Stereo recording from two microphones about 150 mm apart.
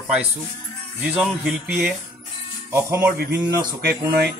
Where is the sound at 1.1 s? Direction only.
10° right (ahead or behind).